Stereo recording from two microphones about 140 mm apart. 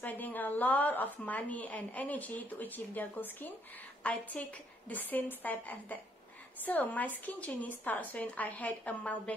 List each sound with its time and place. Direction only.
0.0 s a woman's voice: 10° left (ahead or behind)